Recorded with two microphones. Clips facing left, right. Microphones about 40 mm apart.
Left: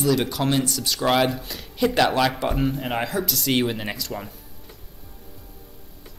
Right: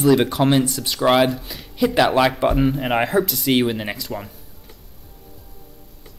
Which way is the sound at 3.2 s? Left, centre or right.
Centre.